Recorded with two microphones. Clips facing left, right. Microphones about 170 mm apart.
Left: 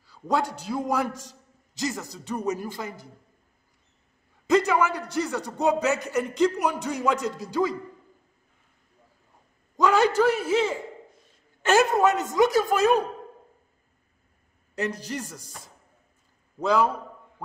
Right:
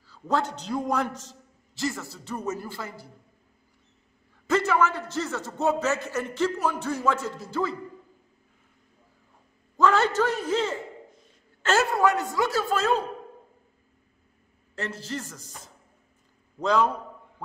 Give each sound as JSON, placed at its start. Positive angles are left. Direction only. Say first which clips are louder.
{"t": 0.0, "sound": "a man's voice", "louder": "left 1 dB", "side_deg": 10}
{"t": 4.5, "sound": "a man's voice", "louder": "left 2 dB", "side_deg": 15}
{"t": 9.8, "sound": "a man's voice", "louder": "left 2 dB", "side_deg": 15}
{"t": 14.8, "sound": "a man's voice", "louder": "left 3 dB", "side_deg": 15}
{"t": 16.5, "sound": "a man's voice", "louder": "left 1 dB", "side_deg": 10}